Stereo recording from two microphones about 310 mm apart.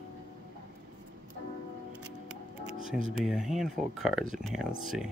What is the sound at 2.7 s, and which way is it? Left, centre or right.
Music, right.